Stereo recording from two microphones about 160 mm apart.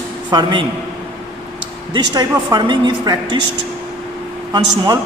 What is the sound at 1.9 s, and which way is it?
Speech, 25° right (ahead or behind).